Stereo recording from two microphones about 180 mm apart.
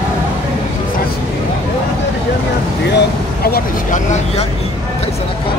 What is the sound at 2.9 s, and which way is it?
Vehicle, 60° left (ahead or behind).